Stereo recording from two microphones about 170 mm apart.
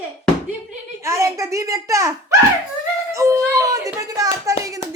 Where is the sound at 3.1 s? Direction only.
15° right (ahead or behind).